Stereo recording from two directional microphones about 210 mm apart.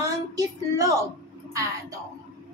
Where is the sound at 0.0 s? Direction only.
15° right (ahead or behind).